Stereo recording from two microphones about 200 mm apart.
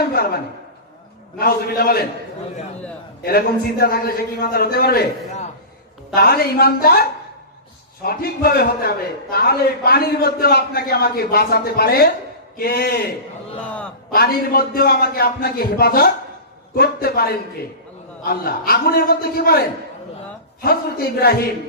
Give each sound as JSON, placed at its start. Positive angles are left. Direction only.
{"t": 0.1, "sound": "a woman's voice", "side_deg": 50}
{"t": 1.4, "sound": "a man's voice", "side_deg": 50}
{"t": 3.2, "sound": "a man's voice", "side_deg": 50}
{"t": 6.1, "sound": "a man's voice", "side_deg": 50}
{"t": 13.7, "sound": "a man's voice", "side_deg": 5}
{"t": 14.1, "sound": "a man's voice", "side_deg": 45}